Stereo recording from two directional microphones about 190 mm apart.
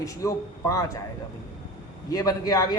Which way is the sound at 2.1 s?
20° left (ahead or behind).